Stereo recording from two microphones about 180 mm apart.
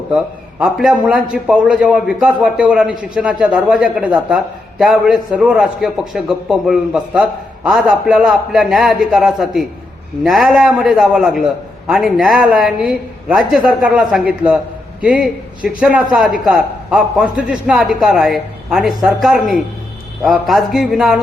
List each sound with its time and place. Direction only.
0.6 s a man's voice: 5° right (ahead or behind)